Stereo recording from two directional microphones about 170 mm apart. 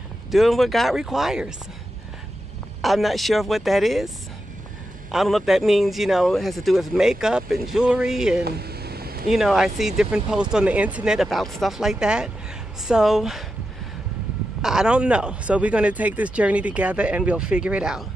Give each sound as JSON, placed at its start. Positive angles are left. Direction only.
{"t": 0.3, "sound": "speech", "side_deg": 0}
{"t": 2.8, "sound": "speech", "side_deg": 0}
{"t": 5.1, "sound": "speech", "side_deg": 0}
{"t": 8.5, "sound": "a sound", "side_deg": -70}
{"t": 9.3, "sound": "speech", "side_deg": 0}
{"t": 14.6, "sound": "speech", "side_deg": -5}